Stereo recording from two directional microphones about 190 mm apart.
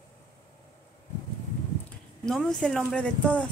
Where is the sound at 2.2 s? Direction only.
5° left (ahead or behind).